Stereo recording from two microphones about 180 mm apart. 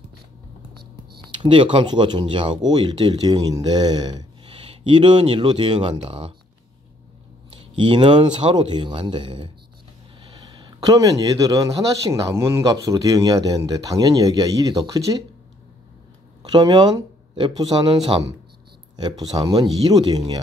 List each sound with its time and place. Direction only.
1.2 s speech: 25° right (ahead or behind)
7.7 s speech: 25° right (ahead or behind)
16.4 s speech: 25° right (ahead or behind)